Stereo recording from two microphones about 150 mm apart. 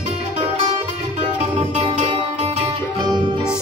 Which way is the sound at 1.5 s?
40° right (ahead or behind).